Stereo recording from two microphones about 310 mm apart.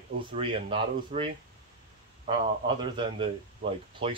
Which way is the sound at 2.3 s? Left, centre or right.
Centre.